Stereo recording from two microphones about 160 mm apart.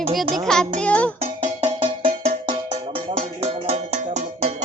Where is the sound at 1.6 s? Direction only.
30° right (ahead or behind).